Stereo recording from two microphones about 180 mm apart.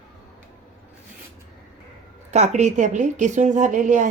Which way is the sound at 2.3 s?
40° right (ahead or behind).